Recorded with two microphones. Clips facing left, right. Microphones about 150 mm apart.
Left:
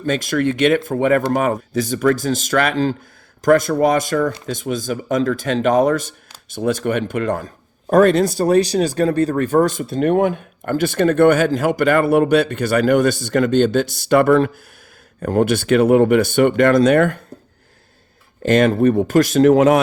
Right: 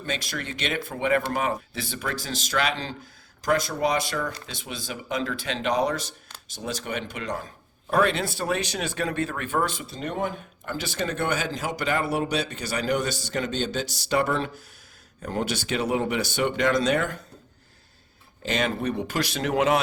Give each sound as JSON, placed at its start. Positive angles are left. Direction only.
{"t": 0.0, "sound": "speech", "side_deg": 50}
{"t": 18.4, "sound": "speech", "side_deg": 50}